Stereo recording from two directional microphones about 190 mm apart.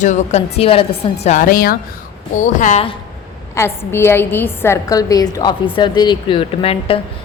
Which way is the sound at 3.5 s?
15° left (ahead or behind).